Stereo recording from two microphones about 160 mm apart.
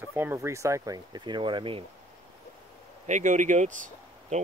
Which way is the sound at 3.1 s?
50° right (ahead or behind).